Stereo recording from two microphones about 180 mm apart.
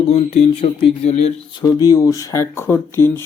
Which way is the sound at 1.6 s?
20° left (ahead or behind).